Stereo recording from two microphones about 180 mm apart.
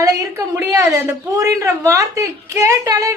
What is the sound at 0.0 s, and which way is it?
A woman's voice, 20° right (ahead or behind).